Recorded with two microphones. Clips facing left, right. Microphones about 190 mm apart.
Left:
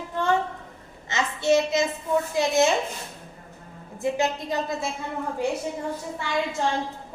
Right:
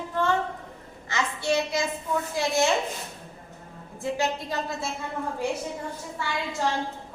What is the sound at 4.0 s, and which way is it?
Speech, 20° left (ahead or behind).